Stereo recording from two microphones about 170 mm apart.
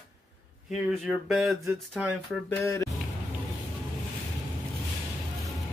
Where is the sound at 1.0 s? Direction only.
Centre (ahead or behind).